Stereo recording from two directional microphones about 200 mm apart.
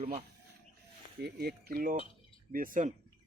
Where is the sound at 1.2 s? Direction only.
50° right (ahead or behind).